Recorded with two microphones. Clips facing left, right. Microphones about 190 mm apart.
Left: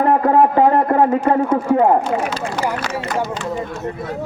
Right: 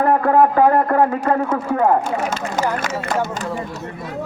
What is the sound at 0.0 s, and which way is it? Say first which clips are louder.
A man's voice: left 1 dB; 20° left (ahead or behind).